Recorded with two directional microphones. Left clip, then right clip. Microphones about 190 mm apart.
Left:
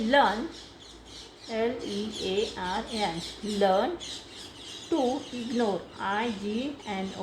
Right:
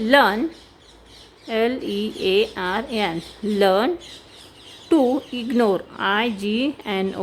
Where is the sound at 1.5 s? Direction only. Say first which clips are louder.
Right 8 dB; 60° right (ahead or behind).